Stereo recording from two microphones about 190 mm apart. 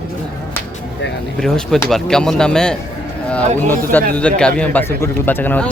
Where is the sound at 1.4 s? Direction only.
Centre (ahead or behind).